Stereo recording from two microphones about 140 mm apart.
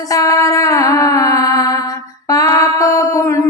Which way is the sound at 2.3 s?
25° left (ahead or behind).